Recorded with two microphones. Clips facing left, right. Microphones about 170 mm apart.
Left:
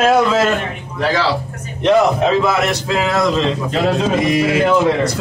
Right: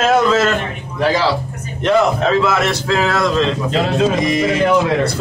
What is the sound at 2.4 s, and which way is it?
Speech, 20° left (ahead or behind).